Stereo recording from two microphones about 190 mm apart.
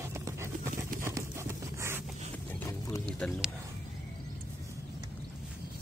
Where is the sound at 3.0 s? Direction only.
5° left (ahead or behind).